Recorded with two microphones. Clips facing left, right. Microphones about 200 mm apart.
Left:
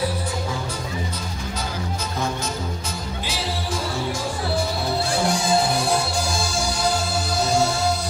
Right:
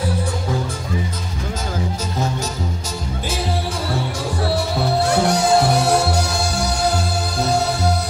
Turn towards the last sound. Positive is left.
turn(degrees=-65)  # may be behind; listen again after turning